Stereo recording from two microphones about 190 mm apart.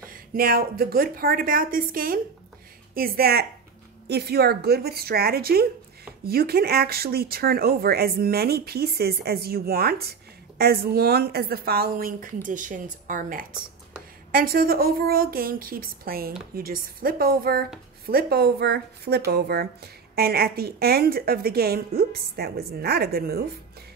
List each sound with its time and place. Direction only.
0.0 s a woman's voice: 50° right (ahead or behind)